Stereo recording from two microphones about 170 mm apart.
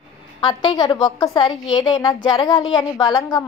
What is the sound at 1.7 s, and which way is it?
Speech, 25° left (ahead or behind).